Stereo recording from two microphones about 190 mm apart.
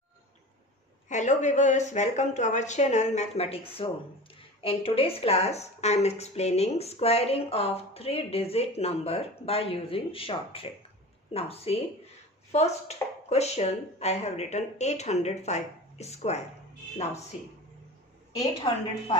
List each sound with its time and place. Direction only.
1.0 s a woman's voice: 40° left (ahead or behind)
18.4 s speech: 25° left (ahead or behind)